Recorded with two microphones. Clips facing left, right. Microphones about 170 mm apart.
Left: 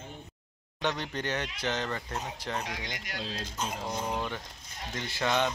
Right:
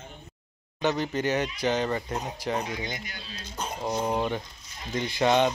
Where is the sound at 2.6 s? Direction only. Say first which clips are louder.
Right 5 dB; 90° left.